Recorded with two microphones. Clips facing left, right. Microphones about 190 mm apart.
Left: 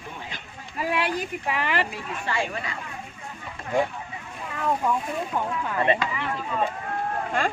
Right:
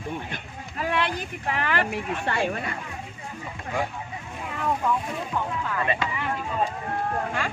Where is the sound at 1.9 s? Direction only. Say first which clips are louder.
Right 3 dB; 60° right (ahead or behind).